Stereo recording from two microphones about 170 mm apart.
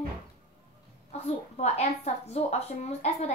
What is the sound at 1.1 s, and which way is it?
Speech, 40° left (ahead or behind).